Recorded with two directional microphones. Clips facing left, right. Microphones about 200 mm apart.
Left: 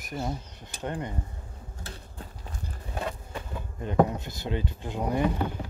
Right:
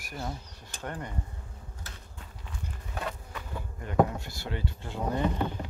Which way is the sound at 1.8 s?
35° left (ahead or behind).